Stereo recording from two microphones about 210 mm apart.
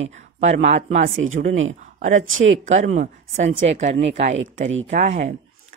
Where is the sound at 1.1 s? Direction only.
75° right (ahead or behind).